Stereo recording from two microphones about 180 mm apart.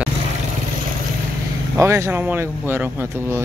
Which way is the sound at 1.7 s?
15° right (ahead or behind).